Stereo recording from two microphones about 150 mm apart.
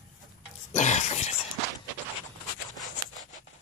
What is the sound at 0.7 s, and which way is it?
Cough, 50° left (ahead or behind).